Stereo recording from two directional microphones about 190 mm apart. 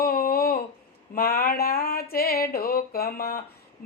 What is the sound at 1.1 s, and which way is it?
Speech, 50° left (ahead or behind).